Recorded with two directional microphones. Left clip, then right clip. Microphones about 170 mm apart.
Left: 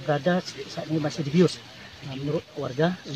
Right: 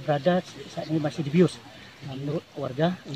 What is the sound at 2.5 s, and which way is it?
Speech, 10° right (ahead or behind).